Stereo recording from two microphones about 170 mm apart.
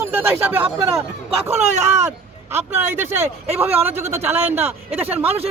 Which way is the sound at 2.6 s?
10° right (ahead or behind).